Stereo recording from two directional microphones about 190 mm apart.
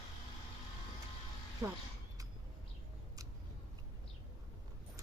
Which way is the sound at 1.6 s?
15° right (ahead or behind).